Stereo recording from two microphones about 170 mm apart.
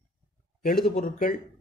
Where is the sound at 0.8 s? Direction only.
55° left (ahead or behind).